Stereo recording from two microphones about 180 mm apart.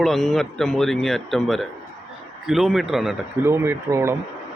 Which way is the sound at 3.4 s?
15° right (ahead or behind).